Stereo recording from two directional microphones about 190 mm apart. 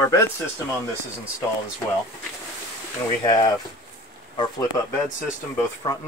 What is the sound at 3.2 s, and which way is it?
Speech, 25° left (ahead or behind).